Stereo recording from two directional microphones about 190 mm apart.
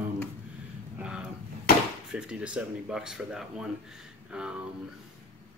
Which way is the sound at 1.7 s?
50° left (ahead or behind).